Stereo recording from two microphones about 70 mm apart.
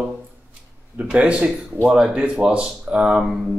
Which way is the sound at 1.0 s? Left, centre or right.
Centre.